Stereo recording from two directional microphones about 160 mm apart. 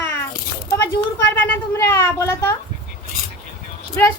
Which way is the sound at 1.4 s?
15° left (ahead or behind).